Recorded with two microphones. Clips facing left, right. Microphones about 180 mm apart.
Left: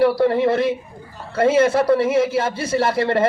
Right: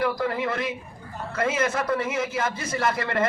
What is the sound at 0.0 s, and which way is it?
A man's voice, 30° left (ahead or behind).